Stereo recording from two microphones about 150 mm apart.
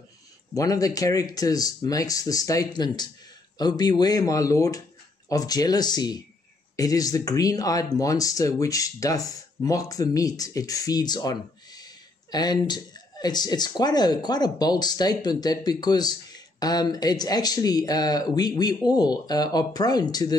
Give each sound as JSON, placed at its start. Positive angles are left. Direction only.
{"t": 0.6, "sound": "speech", "side_deg": 25}